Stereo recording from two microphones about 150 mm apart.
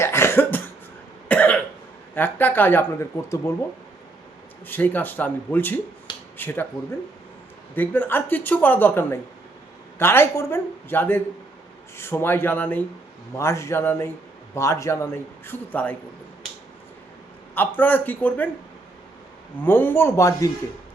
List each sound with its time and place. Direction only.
0.0 s cough: 15° left (ahead or behind)
2.1 s a man's voice: 15° left (ahead or behind)
4.6 s a man's voice: 10° left (ahead or behind)
7.8 s a man's voice: 15° left (ahead or behind)
17.5 s a man's voice: 10° left (ahead or behind)
19.6 s a man's voice: 15° left (ahead or behind)